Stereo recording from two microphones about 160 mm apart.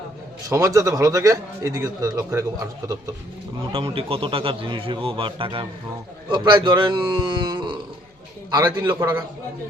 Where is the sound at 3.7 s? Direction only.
35° right (ahead or behind).